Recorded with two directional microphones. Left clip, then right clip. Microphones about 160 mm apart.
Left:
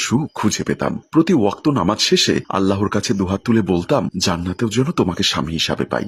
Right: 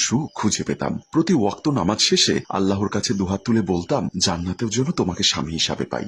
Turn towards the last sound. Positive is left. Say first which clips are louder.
# left 4 dB
turn(degrees=20)  # may be behind; listen again after turning